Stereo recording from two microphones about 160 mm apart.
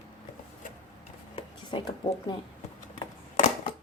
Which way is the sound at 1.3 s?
30° left (ahead or behind).